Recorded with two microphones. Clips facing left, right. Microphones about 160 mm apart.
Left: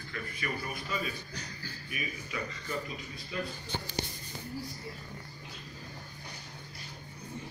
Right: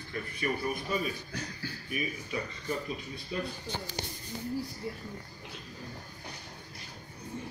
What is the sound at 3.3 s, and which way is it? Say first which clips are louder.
Speech: right 2 dB; 40° right (ahead or behind).